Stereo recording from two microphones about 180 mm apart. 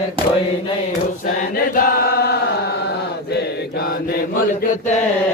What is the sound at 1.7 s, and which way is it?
Chant, 55° left (ahead or behind).